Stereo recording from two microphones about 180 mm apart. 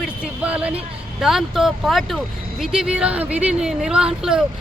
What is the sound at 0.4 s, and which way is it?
Speech, 5° right (ahead or behind).